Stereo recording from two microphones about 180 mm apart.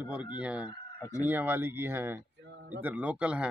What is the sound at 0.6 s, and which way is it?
Speech, 15° left (ahead or behind).